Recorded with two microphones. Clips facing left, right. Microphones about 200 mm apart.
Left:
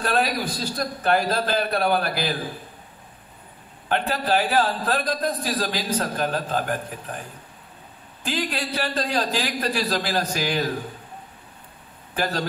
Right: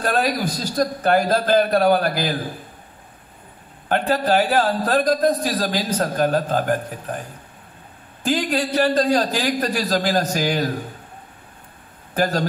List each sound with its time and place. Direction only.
0.0 s a man's voice: 45° right (ahead or behind)
4.1 s a man's voice: 45° right (ahead or behind)
8.2 s a man's voice: 45° right (ahead or behind)
12.1 s speech: 45° right (ahead or behind)